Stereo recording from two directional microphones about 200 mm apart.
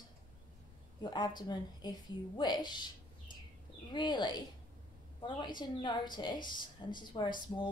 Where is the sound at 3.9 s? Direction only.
20° left (ahead or behind).